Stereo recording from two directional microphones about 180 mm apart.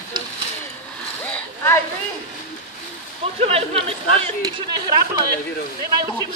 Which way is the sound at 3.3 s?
35° right (ahead or behind).